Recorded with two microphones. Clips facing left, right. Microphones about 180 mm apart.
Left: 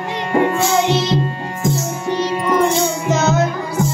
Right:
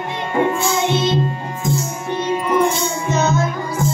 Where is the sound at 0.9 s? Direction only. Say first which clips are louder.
Left 1 dB; 75° left (ahead or behind).